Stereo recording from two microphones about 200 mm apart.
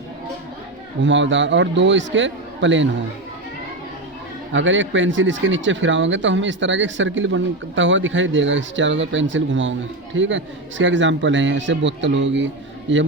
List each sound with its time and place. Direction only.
1.0 s a man's voice: 65° right (ahead or behind)
4.5 s speech: 70° right (ahead or behind)